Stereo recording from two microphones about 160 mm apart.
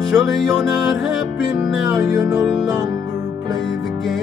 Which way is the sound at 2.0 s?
20° right (ahead or behind).